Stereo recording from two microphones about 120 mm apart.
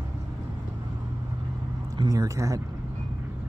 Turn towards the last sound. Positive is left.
turn(degrees=-25)  # may be behind; listen again after turning